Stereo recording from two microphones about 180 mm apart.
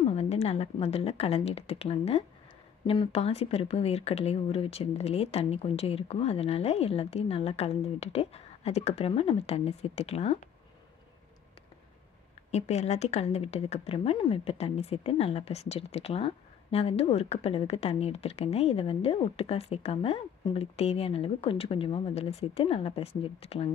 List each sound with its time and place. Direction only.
0.0 s speech: 35° left (ahead or behind)
12.4 s speech: 35° left (ahead or behind)